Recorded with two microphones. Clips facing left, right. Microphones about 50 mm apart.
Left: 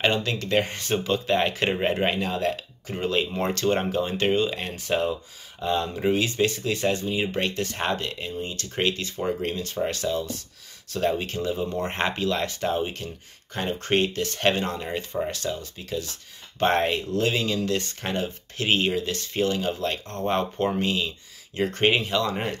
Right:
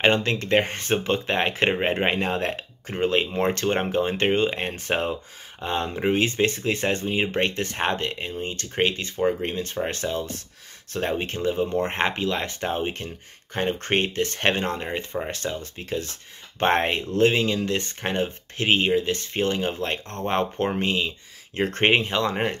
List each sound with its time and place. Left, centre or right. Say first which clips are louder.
0.0 s speech: right 3 dB; right
8.8 s speech: right 3 dB; right
21.5 s speech: right 2 dB; right